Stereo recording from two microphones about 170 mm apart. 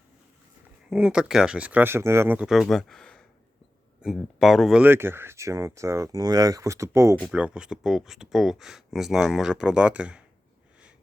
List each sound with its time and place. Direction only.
0.9 s speech: 5° right (ahead or behind)
7.2 s speech: 5° right (ahead or behind)